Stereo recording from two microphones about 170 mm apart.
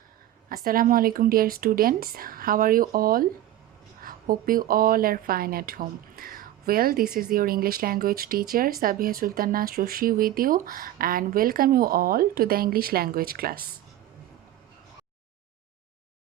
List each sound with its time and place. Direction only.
0.4 s speech: 60° right (ahead or behind)